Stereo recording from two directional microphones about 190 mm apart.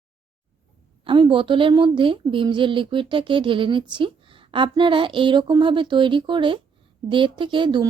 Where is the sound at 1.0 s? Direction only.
25° right (ahead or behind).